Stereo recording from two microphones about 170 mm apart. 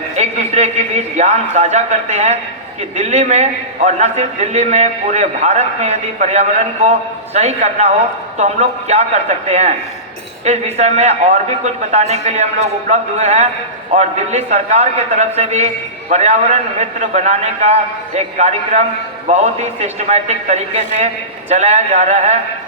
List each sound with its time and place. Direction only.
0.2 s a man's voice: 40° right (ahead or behind)